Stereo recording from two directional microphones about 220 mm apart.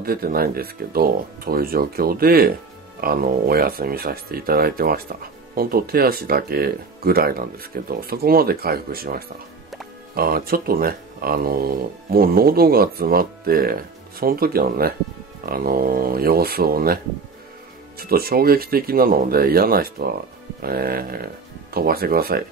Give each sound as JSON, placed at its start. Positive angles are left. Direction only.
{"t": 0.0, "sound": "speech", "side_deg": -40}